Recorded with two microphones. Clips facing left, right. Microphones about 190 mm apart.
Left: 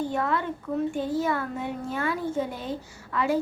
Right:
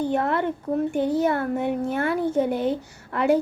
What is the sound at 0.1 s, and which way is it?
A child's voice, 60° right (ahead or behind).